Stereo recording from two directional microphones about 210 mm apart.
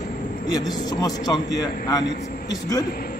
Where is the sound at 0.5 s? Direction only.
20° left (ahead or behind).